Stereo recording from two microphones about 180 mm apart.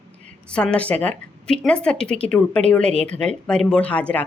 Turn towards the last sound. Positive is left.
turn(degrees=5)  # may be behind; listen again after turning